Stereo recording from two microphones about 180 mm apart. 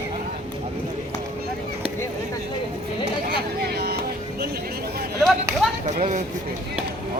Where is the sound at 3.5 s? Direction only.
60° right (ahead or behind).